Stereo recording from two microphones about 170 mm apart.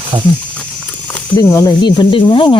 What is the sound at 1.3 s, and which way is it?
Speech, 20° left (ahead or behind).